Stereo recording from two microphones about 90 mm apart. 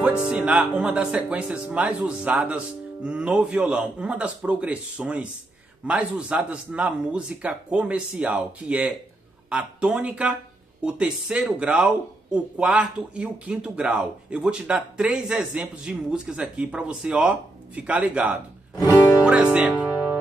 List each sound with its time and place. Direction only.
0.3 s speech: 15° right (ahead or behind)